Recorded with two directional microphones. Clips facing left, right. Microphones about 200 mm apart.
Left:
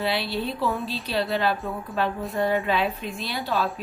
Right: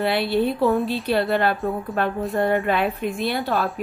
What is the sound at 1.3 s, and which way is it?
A woman's voice, 55° right (ahead or behind).